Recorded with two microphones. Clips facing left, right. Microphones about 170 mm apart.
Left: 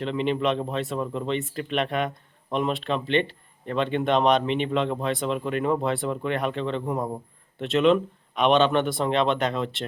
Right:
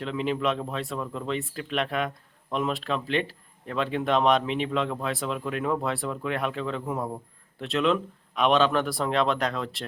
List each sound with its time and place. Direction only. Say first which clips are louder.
0.0 s speech: left 3 dB; centre (ahead or behind)